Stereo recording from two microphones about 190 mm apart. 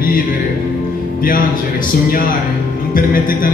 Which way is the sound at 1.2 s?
50° left (ahead or behind).